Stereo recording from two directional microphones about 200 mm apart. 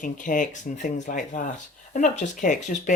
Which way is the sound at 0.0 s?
40° left (ahead or behind).